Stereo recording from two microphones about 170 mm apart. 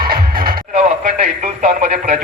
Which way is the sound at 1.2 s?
40° right (ahead or behind).